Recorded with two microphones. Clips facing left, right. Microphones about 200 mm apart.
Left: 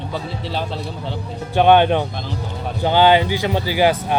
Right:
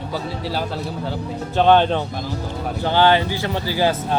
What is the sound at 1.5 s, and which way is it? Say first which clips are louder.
Speech: left 2 dB; 15° left (ahead or behind).